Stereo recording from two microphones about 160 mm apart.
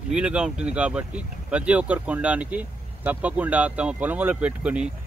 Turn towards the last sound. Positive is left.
turn(degrees=-5)  # may be behind; listen again after turning